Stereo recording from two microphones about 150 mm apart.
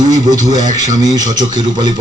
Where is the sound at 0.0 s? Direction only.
25° right (ahead or behind).